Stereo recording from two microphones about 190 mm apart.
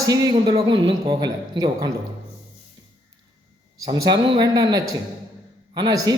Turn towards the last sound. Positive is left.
turn(degrees=-20)  # may be behind; listen again after turning